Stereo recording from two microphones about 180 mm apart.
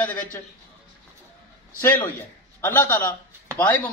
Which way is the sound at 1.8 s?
10° left (ahead or behind).